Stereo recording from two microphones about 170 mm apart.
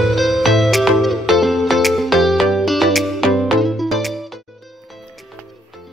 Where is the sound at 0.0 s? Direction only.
Centre (ahead or behind).